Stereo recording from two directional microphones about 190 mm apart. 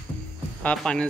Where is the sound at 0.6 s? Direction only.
5° left (ahead or behind).